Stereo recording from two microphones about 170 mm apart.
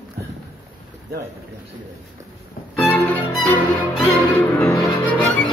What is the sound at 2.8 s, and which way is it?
Violin, 10° left (ahead or behind).